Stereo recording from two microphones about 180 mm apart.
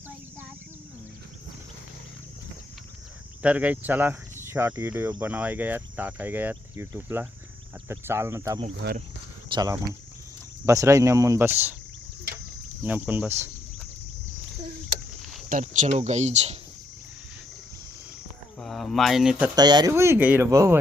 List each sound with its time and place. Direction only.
3.4 s speech: 10° right (ahead or behind)
8.8 s speech: 70° right (ahead or behind)
9.6 s speech: 20° right (ahead or behind)
12.8 s speech: 10° right (ahead or behind)
15.2 s a sound: centre (ahead or behind)
15.4 s speech: 45° right (ahead or behind)
18.6 s speech: centre (ahead or behind)
19.5 s speech: 25° right (ahead or behind)